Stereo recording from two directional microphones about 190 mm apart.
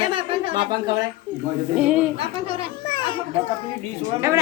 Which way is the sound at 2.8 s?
25° left (ahead or behind).